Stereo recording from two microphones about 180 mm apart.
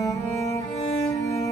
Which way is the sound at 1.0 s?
15° left (ahead or behind).